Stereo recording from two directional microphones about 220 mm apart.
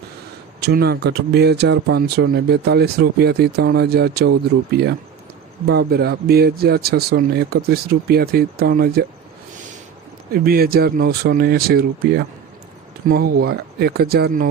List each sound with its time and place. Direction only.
0.6 s speech: 45° right (ahead or behind)
10.3 s speech: 45° right (ahead or behind)